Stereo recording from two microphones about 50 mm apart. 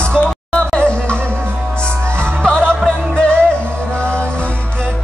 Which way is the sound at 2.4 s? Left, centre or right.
Centre.